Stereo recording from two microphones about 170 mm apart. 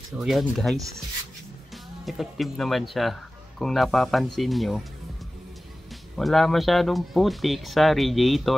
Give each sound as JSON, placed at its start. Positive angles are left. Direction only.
{"t": 0.2, "sound": "speech", "side_deg": 0}
{"t": 2.0, "sound": "speech", "side_deg": 0}
{"t": 6.1, "sound": "speech", "side_deg": 0}